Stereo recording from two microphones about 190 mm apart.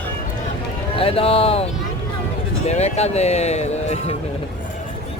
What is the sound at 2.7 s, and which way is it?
Speech, 35° left (ahead or behind).